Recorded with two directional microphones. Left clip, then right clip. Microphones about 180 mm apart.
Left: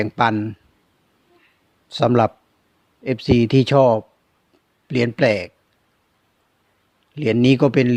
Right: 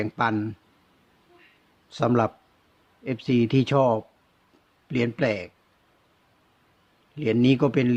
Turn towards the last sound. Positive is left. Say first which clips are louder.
# left 6 dB
turn(degrees=35)  # may be behind; listen again after turning